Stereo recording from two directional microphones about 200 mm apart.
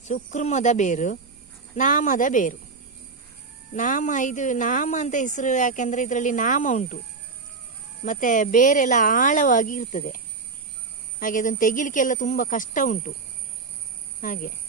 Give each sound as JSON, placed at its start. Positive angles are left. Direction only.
{"t": 0.0, "sound": "speech", "side_deg": 35}
{"t": 3.8, "sound": "speech", "side_deg": 40}
{"t": 8.0, "sound": "speech", "side_deg": 40}
{"t": 11.2, "sound": "speech", "side_deg": 40}
{"t": 14.2, "sound": "speech", "side_deg": 45}